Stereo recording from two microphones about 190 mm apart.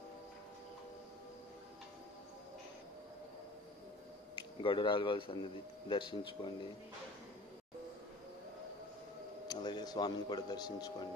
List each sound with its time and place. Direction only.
4.6 s speech: 25° left (ahead or behind)
9.5 s speech: 25° left (ahead or behind)